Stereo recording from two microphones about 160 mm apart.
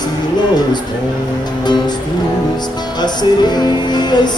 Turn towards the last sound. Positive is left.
turn(degrees=25)  # may be behind; listen again after turning